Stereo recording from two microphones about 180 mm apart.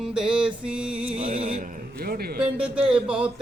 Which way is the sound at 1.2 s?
50° right (ahead or behind).